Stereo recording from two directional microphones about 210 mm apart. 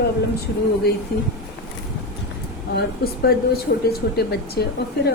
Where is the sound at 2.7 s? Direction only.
50° left (ahead or behind).